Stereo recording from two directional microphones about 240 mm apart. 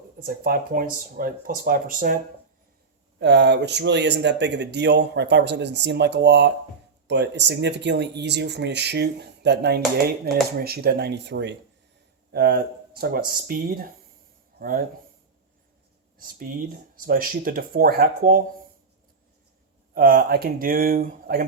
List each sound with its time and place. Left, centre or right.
0.3 s speech: right
3.2 s speech: right
16.2 s speech: right
19.9 s speech: right